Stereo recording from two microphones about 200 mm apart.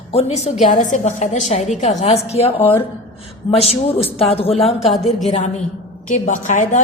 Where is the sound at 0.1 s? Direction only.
30° left (ahead or behind).